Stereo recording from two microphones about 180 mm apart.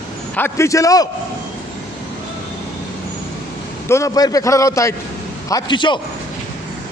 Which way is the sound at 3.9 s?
20° left (ahead or behind).